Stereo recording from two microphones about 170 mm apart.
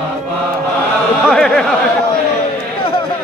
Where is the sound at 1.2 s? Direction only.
5° left (ahead or behind).